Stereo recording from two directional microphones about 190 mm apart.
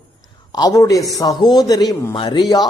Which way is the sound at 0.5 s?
20° left (ahead or behind).